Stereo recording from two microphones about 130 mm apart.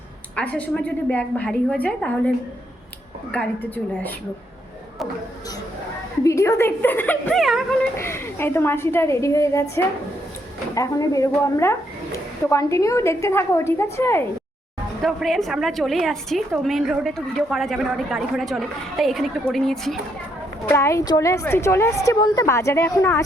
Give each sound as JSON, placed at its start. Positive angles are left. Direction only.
{"t": 0.3, "sound": "a woman's voice", "side_deg": 10}
{"t": 3.3, "sound": "a woman's voice", "side_deg": 15}
{"t": 6.2, "sound": "a woman's voice", "side_deg": 25}
{"t": 7.3, "sound": "a woman's voice", "side_deg": 0}
{"t": 7.9, "sound": "a woman's voice", "side_deg": 20}
{"t": 15.0, "sound": "a woman's voice", "side_deg": 0}
{"t": 20.7, "sound": "a woman's voice", "side_deg": 20}